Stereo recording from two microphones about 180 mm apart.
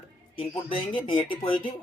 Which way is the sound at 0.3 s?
30° left (ahead or behind).